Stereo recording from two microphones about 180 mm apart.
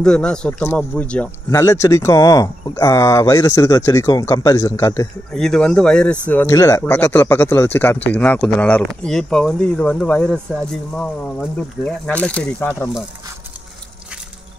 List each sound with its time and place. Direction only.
0.0 s speech: 5° left (ahead or behind)
1.5 s speech: 15° left (ahead or behind)
5.3 s speech: 5° left (ahead or behind)